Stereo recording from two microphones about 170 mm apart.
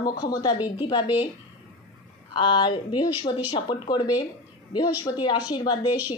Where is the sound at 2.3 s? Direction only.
30° left (ahead or behind).